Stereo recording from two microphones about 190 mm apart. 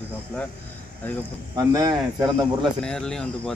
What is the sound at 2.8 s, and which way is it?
Speech, 5° left (ahead or behind).